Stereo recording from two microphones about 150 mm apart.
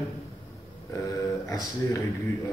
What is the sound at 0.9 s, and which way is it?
Speech, 20° left (ahead or behind).